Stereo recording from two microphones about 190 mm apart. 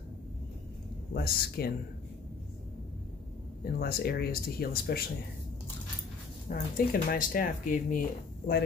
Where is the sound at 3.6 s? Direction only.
55° left (ahead or behind).